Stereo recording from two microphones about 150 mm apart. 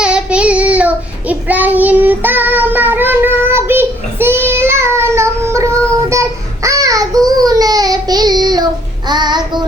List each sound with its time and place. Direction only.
0.0 s child singing: 5° right (ahead or behind)
6.1 s a sound: 20° right (ahead or behind)
9.0 s child singing: 30° right (ahead or behind)